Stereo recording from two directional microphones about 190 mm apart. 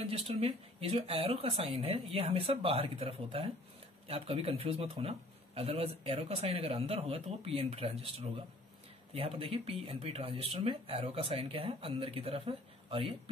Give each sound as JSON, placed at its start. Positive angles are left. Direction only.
{"t": 0.1, "sound": "speech", "side_deg": -30}